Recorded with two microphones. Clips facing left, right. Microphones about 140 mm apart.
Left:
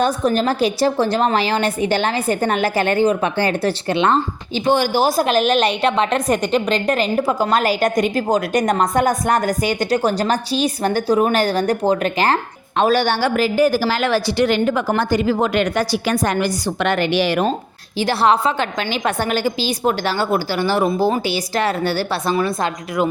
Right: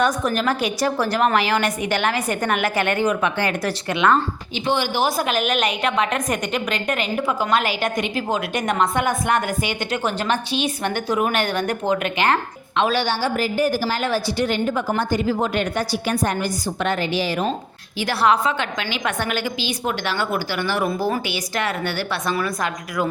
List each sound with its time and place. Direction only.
0.0 s a woman's voice: 30° left (ahead or behind)
4.6 s a woman's voice: 40° left (ahead or behind)
13.2 s a woman's voice: 90° left; by 17.4 s 70° left (ahead or behind)
18.0 s a woman's voice: 30° left (ahead or behind)